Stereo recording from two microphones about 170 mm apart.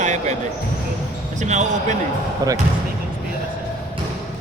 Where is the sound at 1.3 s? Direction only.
45° right (ahead or behind).